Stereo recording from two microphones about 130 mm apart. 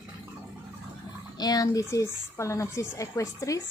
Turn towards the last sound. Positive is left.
turn(degrees=25)  # may be behind; listen again after turning